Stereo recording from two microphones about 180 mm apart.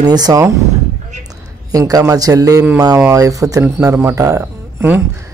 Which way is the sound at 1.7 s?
20° right (ahead or behind).